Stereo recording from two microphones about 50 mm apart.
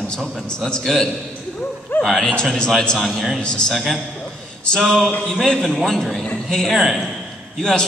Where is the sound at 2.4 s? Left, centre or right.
Centre.